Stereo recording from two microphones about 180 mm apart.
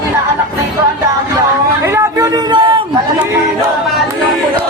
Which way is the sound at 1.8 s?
15° right (ahead or behind).